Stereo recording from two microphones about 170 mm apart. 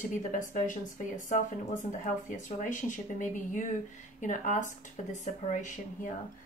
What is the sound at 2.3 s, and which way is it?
Speech, 50° left (ahead or behind).